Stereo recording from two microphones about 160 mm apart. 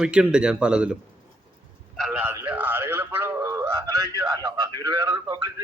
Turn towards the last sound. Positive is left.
turn(degrees=-25)  # may be behind; listen again after turning